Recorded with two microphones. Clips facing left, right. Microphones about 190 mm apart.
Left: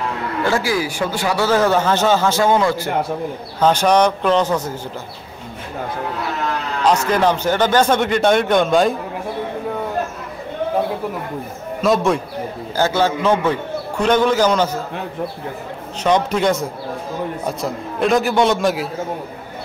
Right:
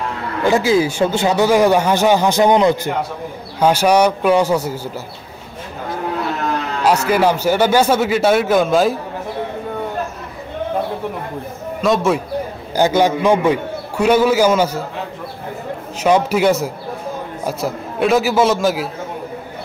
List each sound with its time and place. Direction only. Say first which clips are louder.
0.4 s speech: right 5 dB; 20° right (ahead or behind)
7.1 s speech: right 2 dB; 10° right (ahead or behind)
11.8 s speech: even; centre (ahead or behind)
12.7 s speech: right 3 dB; 15° right (ahead or behind)
16.0 s speech: right 2 dB; 5° right (ahead or behind)